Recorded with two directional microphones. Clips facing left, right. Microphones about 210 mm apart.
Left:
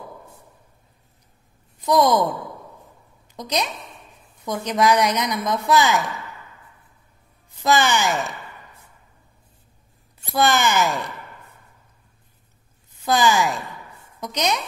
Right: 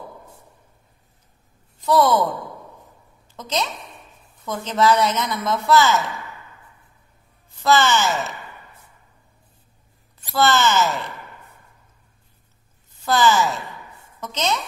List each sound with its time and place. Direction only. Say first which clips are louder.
1.9 s a woman's voice: even; 15° left (ahead or behind)
3.3 s a woman's voice: even; 15° left (ahead or behind)
7.6 s a woman's voice: right 1 dB; 15° left (ahead or behind)
10.3 s a woman's voice: right 1 dB; 15° left (ahead or behind)
13.0 s a woman's voice: right 1 dB; 15° left (ahead or behind)